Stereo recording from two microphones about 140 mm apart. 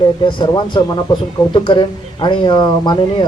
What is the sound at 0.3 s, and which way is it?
Speech, 35° left (ahead or behind).